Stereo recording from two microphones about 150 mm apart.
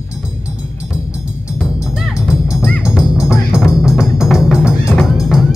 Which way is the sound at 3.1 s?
20° left (ahead or behind).